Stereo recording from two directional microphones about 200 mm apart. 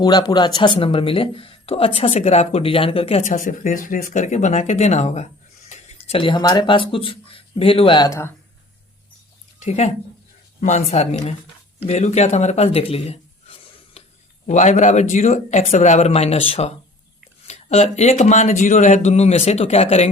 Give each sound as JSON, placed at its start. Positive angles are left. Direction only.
{"t": 0.0, "sound": "speech", "side_deg": 20}
{"t": 9.6, "sound": "speech", "side_deg": 35}